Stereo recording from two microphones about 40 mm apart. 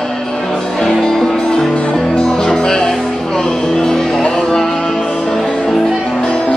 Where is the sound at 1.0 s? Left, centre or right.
Centre.